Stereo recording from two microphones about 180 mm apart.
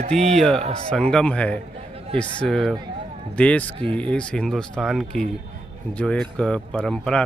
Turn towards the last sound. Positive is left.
turn(degrees=5)  # may be behind; listen again after turning